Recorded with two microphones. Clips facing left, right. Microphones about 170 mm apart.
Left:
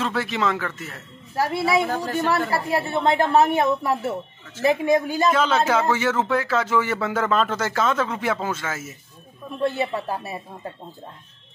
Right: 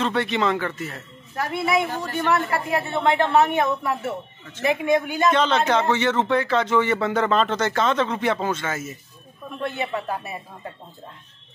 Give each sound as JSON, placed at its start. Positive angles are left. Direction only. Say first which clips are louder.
{"t": 0.0, "sound": "a man's voice", "louder": "right 2 dB", "side_deg": 0}
{"t": 1.3, "sound": "a woman's voice", "louder": "left 2 dB", "side_deg": 30}
{"t": 5.3, "sound": "a man's voice", "louder": "right 1 dB", "side_deg": 5}
{"t": 9.6, "sound": "a woman's voice", "louder": "left 4 dB", "side_deg": 35}